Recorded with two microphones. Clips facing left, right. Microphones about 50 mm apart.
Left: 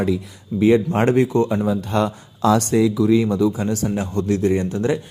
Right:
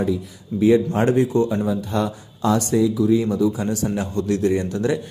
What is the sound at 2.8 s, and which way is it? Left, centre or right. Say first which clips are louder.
Speech: left 1 dB; left.